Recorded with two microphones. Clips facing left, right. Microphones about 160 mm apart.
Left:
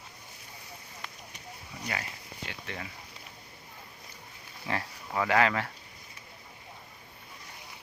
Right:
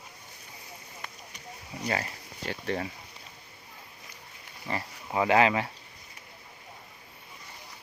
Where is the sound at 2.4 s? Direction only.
35° right (ahead or behind).